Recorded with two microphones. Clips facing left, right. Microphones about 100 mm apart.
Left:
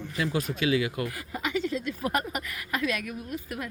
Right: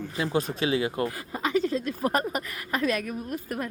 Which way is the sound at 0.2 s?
30° right (ahead or behind).